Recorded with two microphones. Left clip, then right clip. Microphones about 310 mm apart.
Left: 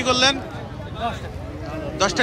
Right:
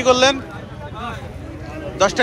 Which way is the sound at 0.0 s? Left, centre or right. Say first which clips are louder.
Right 4 dB; centre.